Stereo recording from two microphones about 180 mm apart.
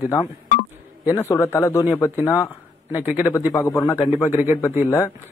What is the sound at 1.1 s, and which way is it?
Speech, 15° left (ahead or behind).